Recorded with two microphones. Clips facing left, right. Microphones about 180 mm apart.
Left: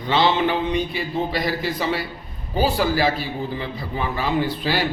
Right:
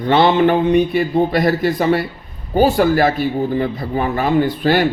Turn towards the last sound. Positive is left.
turn(degrees=-55)  # may be behind; listen again after turning